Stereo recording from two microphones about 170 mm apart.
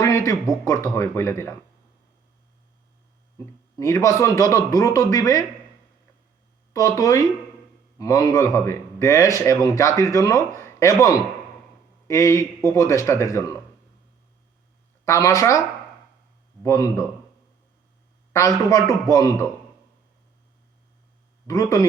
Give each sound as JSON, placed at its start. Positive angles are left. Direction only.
{"t": 0.0, "sound": "a sound", "side_deg": 20}
{"t": 0.9, "sound": "speech", "side_deg": 15}
{"t": 3.3, "sound": "a man's voice", "side_deg": 20}
{"t": 6.7, "sound": "a man's voice", "side_deg": 20}
{"t": 15.0, "sound": "a man's voice", "side_deg": 20}
{"t": 16.6, "sound": "a man's voice", "side_deg": 20}
{"t": 18.3, "sound": "speech", "side_deg": 20}
{"t": 21.4, "sound": "a man's voice", "side_deg": 20}